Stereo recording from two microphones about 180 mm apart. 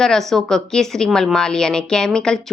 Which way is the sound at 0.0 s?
Centre (ahead or behind).